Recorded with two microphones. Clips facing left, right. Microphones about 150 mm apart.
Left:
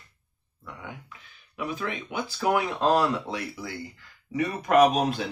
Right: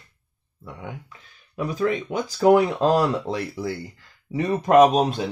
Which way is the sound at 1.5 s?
40° right (ahead or behind).